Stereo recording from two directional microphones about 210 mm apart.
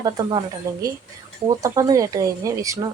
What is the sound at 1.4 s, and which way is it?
A woman's voice, 15° right (ahead or behind).